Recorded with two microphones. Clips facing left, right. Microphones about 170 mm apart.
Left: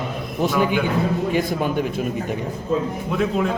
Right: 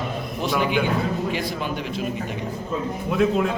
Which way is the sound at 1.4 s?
50° left (ahead or behind).